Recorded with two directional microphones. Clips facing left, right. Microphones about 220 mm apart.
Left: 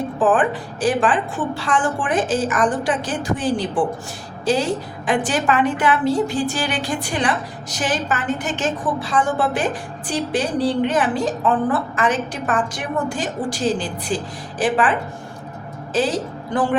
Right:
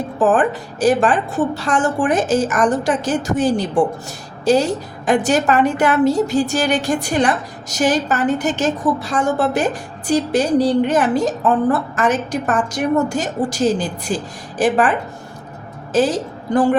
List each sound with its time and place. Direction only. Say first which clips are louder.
0.2 s a woman's voice: right 3 dB; 40° right (ahead or behind)